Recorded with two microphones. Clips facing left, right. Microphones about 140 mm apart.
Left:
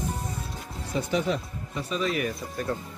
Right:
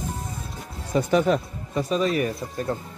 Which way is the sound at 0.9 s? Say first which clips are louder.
Right 6 dB; 50° right (ahead or behind).